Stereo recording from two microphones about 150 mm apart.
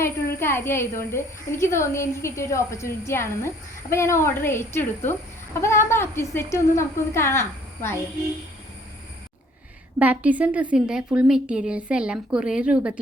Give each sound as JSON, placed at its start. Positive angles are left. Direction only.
{"t": 0.3, "sound": "a woman's voice", "side_deg": 15}
{"t": 10.0, "sound": "a woman's voice", "side_deg": -10}